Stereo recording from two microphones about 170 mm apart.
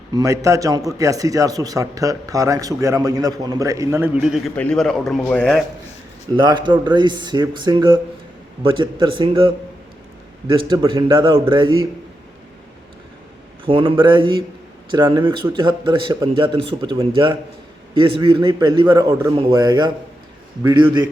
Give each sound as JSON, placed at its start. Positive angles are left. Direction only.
{"t": 0.1, "sound": "speech", "side_deg": -20}
{"t": 6.3, "sound": "speech", "side_deg": -25}
{"t": 10.5, "sound": "speech", "side_deg": -30}
{"t": 13.7, "sound": "speech", "side_deg": -30}
{"t": 18.0, "sound": "speech", "side_deg": -30}